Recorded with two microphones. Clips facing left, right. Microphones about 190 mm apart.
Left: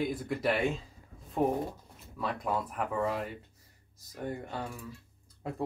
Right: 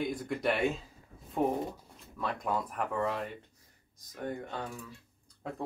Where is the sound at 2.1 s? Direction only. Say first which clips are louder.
Left 1 dB; centre (ahead or behind).